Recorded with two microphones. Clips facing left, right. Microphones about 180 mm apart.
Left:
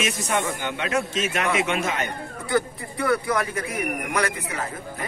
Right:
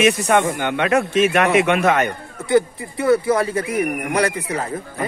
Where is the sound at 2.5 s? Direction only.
25° right (ahead or behind).